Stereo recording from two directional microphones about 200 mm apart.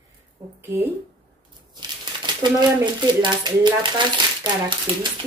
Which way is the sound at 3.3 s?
20° right (ahead or behind).